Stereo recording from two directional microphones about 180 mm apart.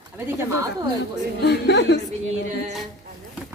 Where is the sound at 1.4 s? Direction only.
70° left (ahead or behind).